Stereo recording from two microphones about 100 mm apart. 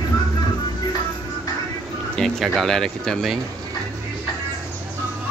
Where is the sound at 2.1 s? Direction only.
5° left (ahead or behind).